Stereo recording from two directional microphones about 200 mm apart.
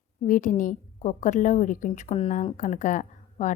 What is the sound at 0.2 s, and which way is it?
Speech, 40° left (ahead or behind).